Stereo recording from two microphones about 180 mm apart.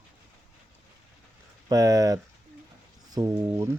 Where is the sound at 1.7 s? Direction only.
20° right (ahead or behind).